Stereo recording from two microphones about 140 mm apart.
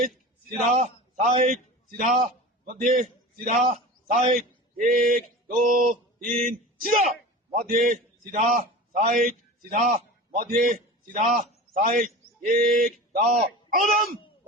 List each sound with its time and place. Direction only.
0.6 s a man's voice: 60° right (ahead or behind)
2.0 s a man's voice: 60° right (ahead or behind)